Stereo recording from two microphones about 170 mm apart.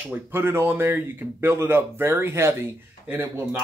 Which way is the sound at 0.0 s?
10° right (ahead or behind).